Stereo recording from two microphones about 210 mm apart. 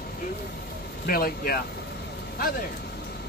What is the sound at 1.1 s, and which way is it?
Speech, 45° left (ahead or behind).